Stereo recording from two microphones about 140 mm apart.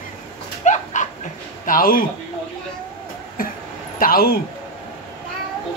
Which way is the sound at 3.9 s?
90° left.